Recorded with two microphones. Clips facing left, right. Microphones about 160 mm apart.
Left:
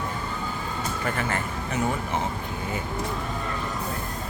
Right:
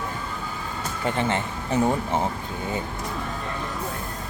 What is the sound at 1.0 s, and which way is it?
Speech, 25° right (ahead or behind).